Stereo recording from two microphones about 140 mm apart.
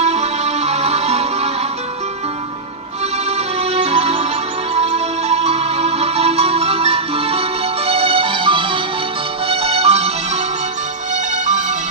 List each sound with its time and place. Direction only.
0.0 s music: 50° right (ahead or behind)
3.3 s music: 50° right (ahead or behind)